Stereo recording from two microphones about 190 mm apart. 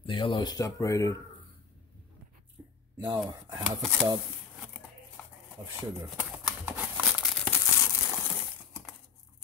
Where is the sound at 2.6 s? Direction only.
15° right (ahead or behind).